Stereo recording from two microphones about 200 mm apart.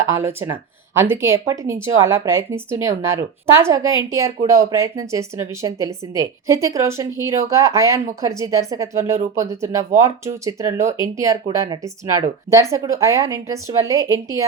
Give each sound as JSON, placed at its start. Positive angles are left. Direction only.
{"t": 0.2, "sound": "speech", "side_deg": -10}